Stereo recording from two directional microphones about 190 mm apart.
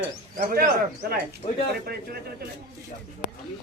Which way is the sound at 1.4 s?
35° left (ahead or behind).